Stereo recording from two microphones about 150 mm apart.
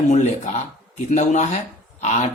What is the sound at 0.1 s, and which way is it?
Speech, 50° left (ahead or behind).